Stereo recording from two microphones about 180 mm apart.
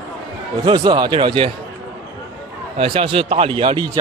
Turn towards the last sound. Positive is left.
turn(degrees=-30)  # may be behind; listen again after turning